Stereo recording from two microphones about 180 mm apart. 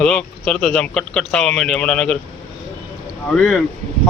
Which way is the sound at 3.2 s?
5° left (ahead or behind).